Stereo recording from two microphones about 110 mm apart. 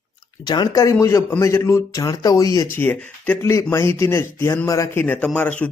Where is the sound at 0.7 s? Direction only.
30° left (ahead or behind).